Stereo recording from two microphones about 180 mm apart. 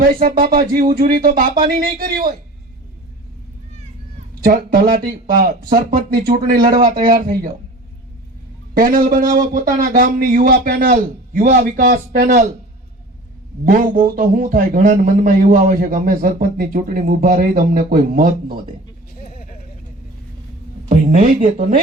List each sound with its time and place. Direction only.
0.0 s speech: 55° right (ahead or behind)
4.4 s speech: 55° right (ahead or behind)
8.7 s speech: 50° right (ahead or behind)
13.7 s speech: 50° right (ahead or behind)
19.3 s a sound: 50° left (ahead or behind)
20.9 s speech: 45° right (ahead or behind)